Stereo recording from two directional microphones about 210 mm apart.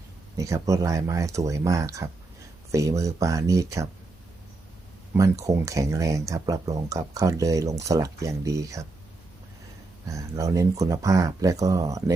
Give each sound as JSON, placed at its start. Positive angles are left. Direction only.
{"t": 0.3, "sound": "speech", "side_deg": -15}
{"t": 5.1, "sound": "speech", "side_deg": -15}
{"t": 10.1, "sound": "speech", "side_deg": -15}